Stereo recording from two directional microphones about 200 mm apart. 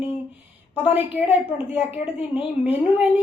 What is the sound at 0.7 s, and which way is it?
Speech, 10° right (ahead or behind).